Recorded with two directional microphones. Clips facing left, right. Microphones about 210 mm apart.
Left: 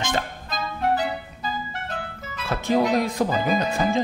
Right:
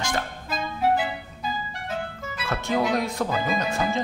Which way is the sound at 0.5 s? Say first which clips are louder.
Right 2 dB; 5° right (ahead or behind).